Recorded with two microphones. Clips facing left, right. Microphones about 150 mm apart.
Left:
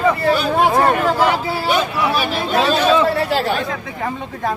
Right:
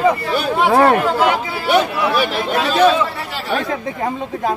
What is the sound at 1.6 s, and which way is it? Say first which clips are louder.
Speech: right 4 dB; 65° right (ahead or behind).